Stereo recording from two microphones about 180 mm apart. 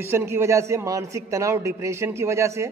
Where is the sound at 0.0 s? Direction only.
15° right (ahead or behind).